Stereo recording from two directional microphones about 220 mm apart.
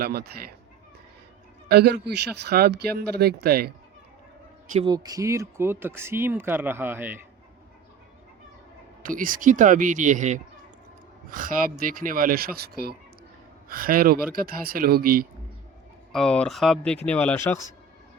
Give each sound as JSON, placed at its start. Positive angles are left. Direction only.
{"t": 0.0, "sound": "speech", "side_deg": -45}
{"t": 1.6, "sound": "speech", "side_deg": -45}
{"t": 4.9, "sound": "speech", "side_deg": -15}
{"t": 9.0, "sound": "speech", "side_deg": -40}
{"t": 16.1, "sound": "speech", "side_deg": 5}